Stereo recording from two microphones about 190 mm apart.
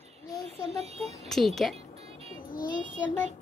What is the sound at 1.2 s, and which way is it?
Speech, centre (ahead or behind).